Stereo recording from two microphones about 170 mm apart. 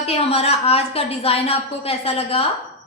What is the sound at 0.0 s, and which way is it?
A woman's voice, 35° left (ahead or behind).